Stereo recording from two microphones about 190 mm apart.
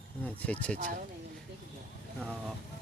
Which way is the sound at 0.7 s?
45° right (ahead or behind).